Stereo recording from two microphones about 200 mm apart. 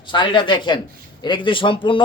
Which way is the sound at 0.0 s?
25° left (ahead or behind).